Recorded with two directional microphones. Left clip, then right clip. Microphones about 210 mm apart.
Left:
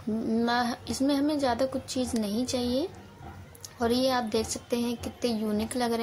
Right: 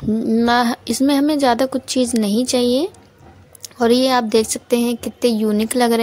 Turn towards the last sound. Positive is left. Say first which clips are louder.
# right 12 dB
turn(degrees=-45)  # may be behind; listen again after turning